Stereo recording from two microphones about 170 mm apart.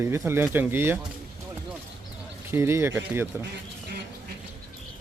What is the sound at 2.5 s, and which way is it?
Speech, 15° right (ahead or behind).